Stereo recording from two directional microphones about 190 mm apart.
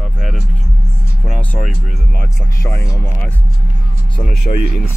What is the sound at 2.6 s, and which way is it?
Speech, 15° left (ahead or behind).